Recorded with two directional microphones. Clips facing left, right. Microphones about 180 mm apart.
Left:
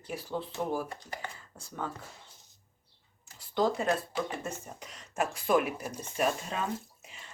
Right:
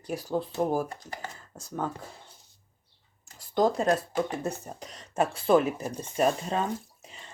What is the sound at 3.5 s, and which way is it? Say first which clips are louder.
Speech: right 4 dB; 40° right (ahead or behind).